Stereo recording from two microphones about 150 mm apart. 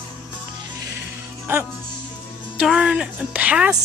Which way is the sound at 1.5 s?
15° right (ahead or behind).